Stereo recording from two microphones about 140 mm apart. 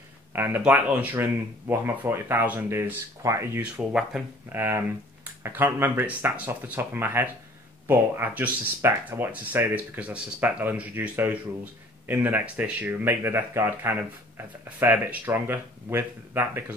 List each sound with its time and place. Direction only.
0.3 s speech: 15° right (ahead or behind)
3.9 s speech: 5° right (ahead or behind)